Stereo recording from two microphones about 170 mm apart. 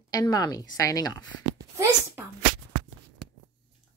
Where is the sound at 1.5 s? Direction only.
15° right (ahead or behind).